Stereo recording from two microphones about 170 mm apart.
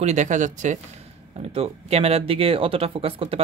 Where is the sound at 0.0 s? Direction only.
45° right (ahead or behind).